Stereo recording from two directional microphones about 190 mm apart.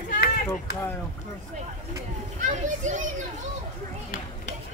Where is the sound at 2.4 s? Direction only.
40° right (ahead or behind).